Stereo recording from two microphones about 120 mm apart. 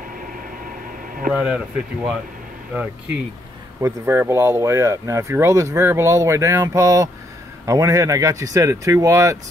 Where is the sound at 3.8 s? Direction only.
20° right (ahead or behind).